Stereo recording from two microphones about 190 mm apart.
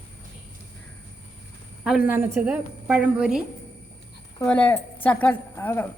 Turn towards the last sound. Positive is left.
turn(degrees=10)  # may be behind; listen again after turning